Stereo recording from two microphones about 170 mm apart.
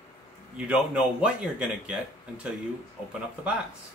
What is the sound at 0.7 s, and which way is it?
Speech, 5° right (ahead or behind).